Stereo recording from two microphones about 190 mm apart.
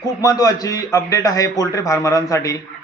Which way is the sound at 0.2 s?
20° left (ahead or behind).